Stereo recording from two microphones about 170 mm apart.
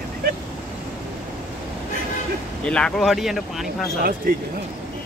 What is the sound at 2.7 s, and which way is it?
Speech, 5° left (ahead or behind).